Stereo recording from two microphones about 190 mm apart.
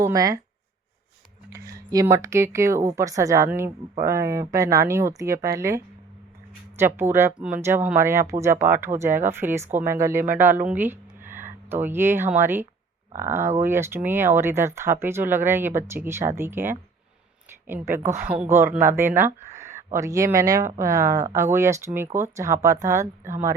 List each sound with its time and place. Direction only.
0.0 s speech: 20° right (ahead or behind)
1.5 s speech: 15° right (ahead or behind)